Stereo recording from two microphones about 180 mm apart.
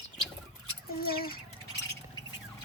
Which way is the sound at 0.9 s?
55° left (ahead or behind).